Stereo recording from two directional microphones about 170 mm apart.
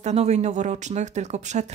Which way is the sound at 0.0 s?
40° right (ahead or behind).